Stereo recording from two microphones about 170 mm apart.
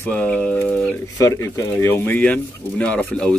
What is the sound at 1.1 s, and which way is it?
Speech, 15° left (ahead or behind).